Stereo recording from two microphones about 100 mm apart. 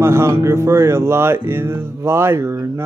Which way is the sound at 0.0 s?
25° right (ahead or behind).